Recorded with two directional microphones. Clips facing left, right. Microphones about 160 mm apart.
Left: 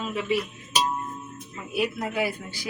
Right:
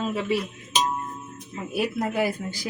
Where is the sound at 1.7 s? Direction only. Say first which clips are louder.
Right 2 dB; 45° right (ahead or behind).